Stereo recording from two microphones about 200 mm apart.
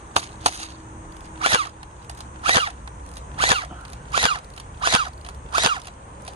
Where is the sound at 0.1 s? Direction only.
30° right (ahead or behind).